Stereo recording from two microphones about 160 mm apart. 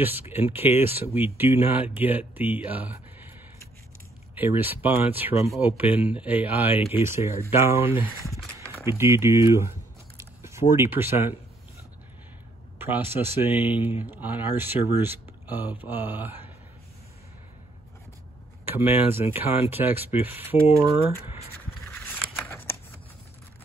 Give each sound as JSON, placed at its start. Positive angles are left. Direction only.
{"t": 0.0, "sound": "speech", "side_deg": -15}
{"t": 4.4, "sound": "speech", "side_deg": -15}
{"t": 12.7, "sound": "speech", "side_deg": -15}
{"t": 18.7, "sound": "speech", "side_deg": -15}
{"t": 21.9, "sound": "a sound", "side_deg": 15}
{"t": 22.5, "sound": "scissors", "side_deg": 15}